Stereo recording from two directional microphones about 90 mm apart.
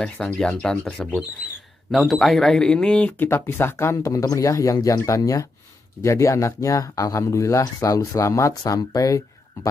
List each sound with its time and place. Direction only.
0.0 s speech: 5° left (ahead or behind); by 9.7 s 40° left (ahead or behind)